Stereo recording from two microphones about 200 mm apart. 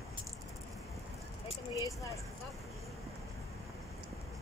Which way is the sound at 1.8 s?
15° left (ahead or behind).